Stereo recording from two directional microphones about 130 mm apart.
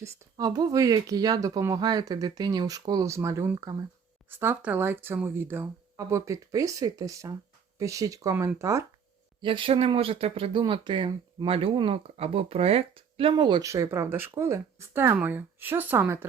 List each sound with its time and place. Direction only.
0.0 s speech: 30° right (ahead or behind)
4.3 s speech: 15° right (ahead or behind)
9.4 s speech: 40° right (ahead or behind)
13.3 s speech: 35° right (ahead or behind)
13.7 s speech: 25° right (ahead or behind)